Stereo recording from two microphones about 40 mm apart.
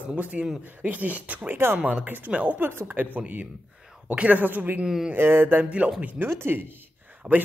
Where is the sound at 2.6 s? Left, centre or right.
Right.